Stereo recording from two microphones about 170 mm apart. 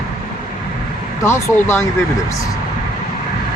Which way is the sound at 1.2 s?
15° left (ahead or behind).